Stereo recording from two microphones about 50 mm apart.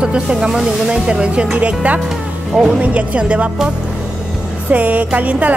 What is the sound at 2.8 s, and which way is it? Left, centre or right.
Speech, right.